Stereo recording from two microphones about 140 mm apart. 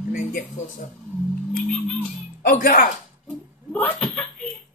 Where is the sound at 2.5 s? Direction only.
80° left.